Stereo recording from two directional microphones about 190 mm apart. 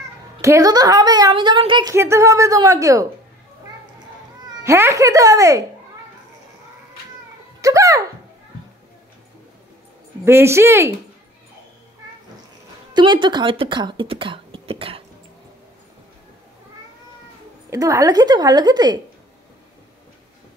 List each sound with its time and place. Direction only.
0.4 s a woman's voice: 15° right (ahead or behind)
4.6 s speech: 15° right (ahead or behind)
7.6 s a child's voice: 15° right (ahead or behind)
10.2 s speech: 15° right (ahead or behind)
12.9 s speech: 25° right (ahead or behind)
17.6 s a woman's voice: 15° right (ahead or behind)